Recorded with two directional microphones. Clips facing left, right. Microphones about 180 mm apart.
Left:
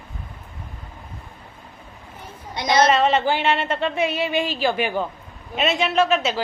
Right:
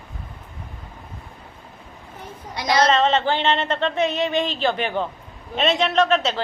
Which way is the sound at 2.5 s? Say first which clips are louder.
Left 1 dB; 20° left (ahead or behind).